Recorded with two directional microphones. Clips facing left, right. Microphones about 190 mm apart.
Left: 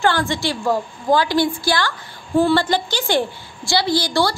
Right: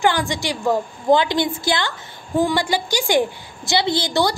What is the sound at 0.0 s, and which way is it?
A woman's voice, 15° right (ahead or behind).